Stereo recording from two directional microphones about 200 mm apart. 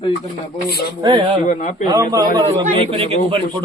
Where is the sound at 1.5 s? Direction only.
40° left (ahead or behind).